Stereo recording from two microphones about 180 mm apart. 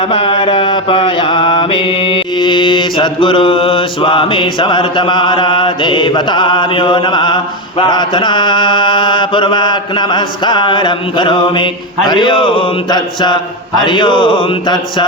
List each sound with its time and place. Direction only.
0.0 s mantra: 30° left (ahead or behind)